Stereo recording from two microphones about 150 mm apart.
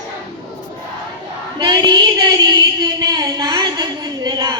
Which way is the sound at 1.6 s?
25° right (ahead or behind).